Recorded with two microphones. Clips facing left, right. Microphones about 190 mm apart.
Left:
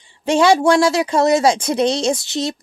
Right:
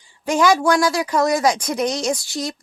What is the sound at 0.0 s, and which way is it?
Speech, 25° left (ahead or behind).